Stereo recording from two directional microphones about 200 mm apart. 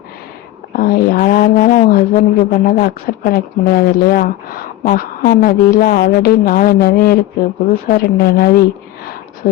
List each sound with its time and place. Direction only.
0.7 s speech: 45° left (ahead or behind)